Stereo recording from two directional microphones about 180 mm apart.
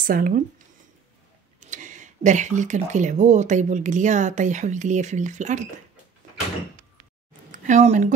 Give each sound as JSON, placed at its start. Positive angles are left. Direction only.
{"t": 0.0, "sound": "speech", "side_deg": -50}
{"t": 1.6, "sound": "speech", "side_deg": -45}
{"t": 7.5, "sound": "speech", "side_deg": -45}